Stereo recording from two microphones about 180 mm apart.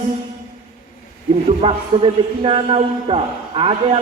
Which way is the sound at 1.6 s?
30° right (ahead or behind).